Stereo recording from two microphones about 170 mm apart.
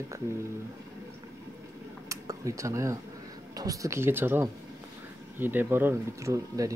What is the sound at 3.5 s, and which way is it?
Speech, 20° right (ahead or behind).